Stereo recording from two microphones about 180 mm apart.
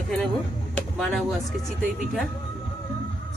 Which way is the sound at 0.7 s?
5° left (ahead or behind).